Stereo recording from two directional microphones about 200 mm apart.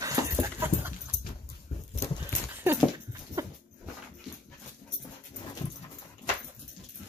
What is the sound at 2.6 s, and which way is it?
Dog, 15° right (ahead or behind).